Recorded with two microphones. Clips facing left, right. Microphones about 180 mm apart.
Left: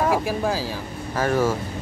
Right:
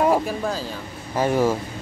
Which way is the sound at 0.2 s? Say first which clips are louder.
Left 2 dB; 10° left (ahead or behind).